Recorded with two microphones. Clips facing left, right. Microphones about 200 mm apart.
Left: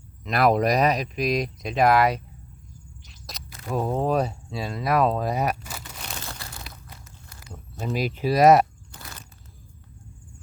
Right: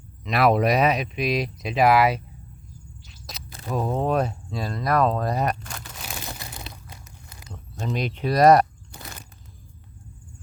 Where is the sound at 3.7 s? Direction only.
5° left (ahead or behind).